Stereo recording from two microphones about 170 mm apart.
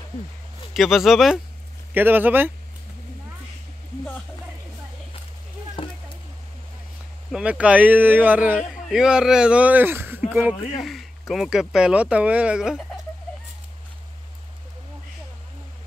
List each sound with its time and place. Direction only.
0.7 s speech: centre (ahead or behind)
5.8 s a sound: 30° left (ahead or behind)
7.2 s speech: 5° right (ahead or behind)